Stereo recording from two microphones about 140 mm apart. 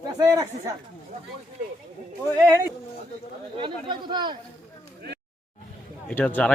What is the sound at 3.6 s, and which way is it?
Speech, 35° right (ahead or behind).